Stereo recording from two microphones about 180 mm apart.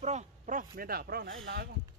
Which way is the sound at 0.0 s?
40° right (ahead or behind).